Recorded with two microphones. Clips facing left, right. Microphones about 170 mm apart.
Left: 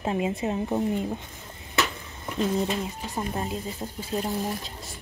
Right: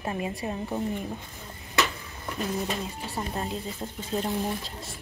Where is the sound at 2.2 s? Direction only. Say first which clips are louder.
Left 5 dB; 15° left (ahead or behind); by 5.0 s centre (ahead or behind).